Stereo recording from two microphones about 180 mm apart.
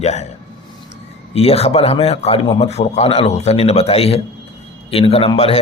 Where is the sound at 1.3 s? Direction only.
35° left (ahead or behind).